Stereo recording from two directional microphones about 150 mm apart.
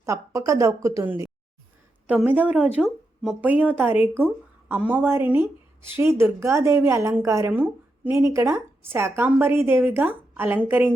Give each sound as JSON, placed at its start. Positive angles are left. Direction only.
{"t": 0.0, "sound": "a woman's voice", "side_deg": -20}